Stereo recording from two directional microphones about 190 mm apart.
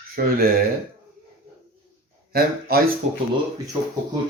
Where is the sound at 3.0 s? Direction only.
35° right (ahead or behind).